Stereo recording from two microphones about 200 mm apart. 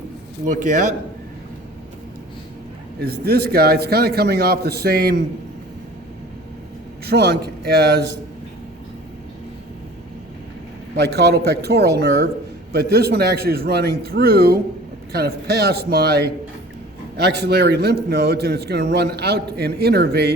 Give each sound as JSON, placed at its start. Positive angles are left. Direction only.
{"t": 0.4, "sound": "a man's voice", "side_deg": -40}
{"t": 3.0, "sound": "a man's voice", "side_deg": -50}
{"t": 7.1, "sound": "a man's voice", "side_deg": -55}
{"t": 11.0, "sound": "a man's voice", "side_deg": -55}